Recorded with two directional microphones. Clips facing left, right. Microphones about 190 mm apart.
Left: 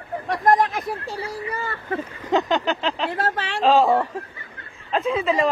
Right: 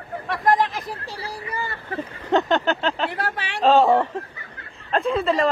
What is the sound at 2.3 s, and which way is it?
Speech, centre (ahead or behind).